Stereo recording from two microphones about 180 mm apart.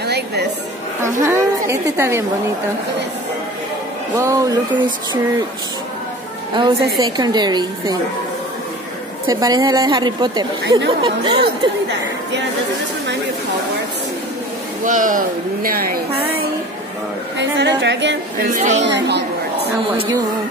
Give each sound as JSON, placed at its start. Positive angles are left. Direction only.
{"t": 0.0, "sound": "a sound", "side_deg": -65}
{"t": 1.0, "sound": "a woman's voice", "side_deg": -15}
{"t": 4.2, "sound": "a woman's voice", "side_deg": -20}
{"t": 6.5, "sound": "a woman's voice", "side_deg": -25}
{"t": 9.3, "sound": "a woman's voice", "side_deg": -20}
{"t": 14.9, "sound": "speech", "side_deg": -45}
{"t": 17.4, "sound": "speech", "side_deg": -75}
{"t": 18.5, "sound": "a woman's voice", "side_deg": -40}
{"t": 18.9, "sound": "speech", "side_deg": -70}